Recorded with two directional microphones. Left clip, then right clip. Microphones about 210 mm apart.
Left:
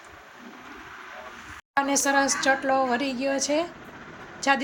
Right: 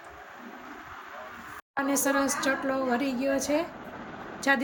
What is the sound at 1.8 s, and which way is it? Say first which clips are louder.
A woman's voice: left 3 dB; centre (ahead or behind).